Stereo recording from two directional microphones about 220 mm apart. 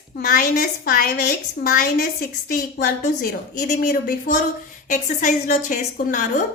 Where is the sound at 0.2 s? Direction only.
40° left (ahead or behind).